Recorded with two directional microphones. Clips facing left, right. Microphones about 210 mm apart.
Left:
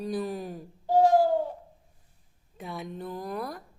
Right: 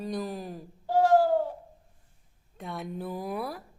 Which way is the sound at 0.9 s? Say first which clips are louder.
Left 1 dB; 15° left (ahead or behind).